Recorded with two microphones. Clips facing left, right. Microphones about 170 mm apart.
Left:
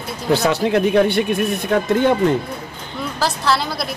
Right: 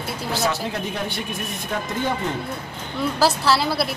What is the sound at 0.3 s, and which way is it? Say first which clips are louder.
Speech: left 9 dB; 65° left (ahead or behind).